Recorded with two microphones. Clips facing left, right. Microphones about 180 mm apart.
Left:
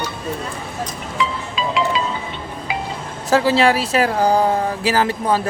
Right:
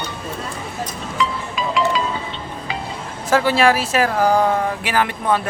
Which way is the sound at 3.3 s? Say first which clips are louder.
Left 1 dB; 25° left (ahead or behind).